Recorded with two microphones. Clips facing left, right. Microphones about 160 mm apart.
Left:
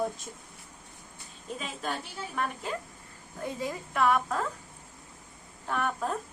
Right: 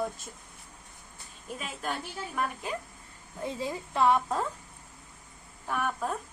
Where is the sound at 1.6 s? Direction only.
5° right (ahead or behind).